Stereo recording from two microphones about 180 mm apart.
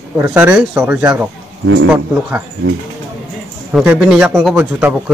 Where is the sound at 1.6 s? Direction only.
90° right.